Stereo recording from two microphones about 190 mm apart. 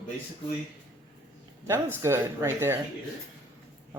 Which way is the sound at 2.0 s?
15° right (ahead or behind).